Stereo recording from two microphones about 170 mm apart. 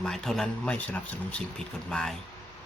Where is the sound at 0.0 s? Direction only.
5° left (ahead or behind).